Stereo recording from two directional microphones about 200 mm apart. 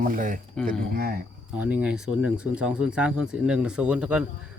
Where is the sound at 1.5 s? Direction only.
5° right (ahead or behind).